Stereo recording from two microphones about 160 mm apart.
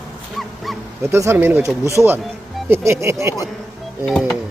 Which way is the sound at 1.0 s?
15° right (ahead or behind).